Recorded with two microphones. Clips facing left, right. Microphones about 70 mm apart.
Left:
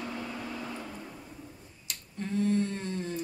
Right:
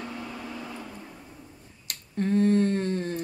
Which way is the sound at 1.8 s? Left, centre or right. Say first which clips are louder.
Right 9 dB; right.